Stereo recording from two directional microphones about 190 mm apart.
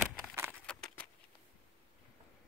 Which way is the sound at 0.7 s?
5° left (ahead or behind).